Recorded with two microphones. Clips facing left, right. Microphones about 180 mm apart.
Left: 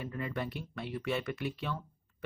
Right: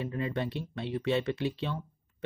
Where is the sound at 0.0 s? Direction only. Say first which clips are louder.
Right 4 dB; 25° right (ahead or behind).